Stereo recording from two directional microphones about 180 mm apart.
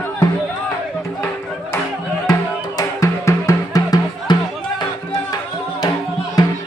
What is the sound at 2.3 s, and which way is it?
Music, 20° left (ahead or behind).